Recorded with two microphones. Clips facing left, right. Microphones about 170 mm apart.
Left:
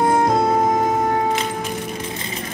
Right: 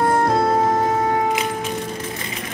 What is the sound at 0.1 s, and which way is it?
Music, 20° left (ahead or behind).